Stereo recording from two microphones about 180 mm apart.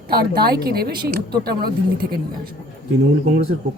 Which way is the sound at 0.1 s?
60° right (ahead or behind).